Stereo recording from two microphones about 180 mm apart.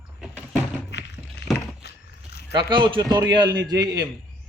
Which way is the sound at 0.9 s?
75° left (ahead or behind).